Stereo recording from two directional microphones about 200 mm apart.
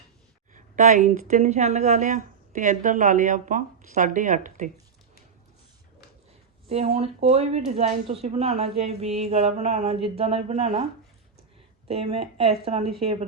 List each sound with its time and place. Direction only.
0.5 s a sound: 40° right (ahead or behind)
1.3 s speech: 35° right (ahead or behind)
6.9 s speech: 30° right (ahead or behind)
11.9 s speech: 30° right (ahead or behind)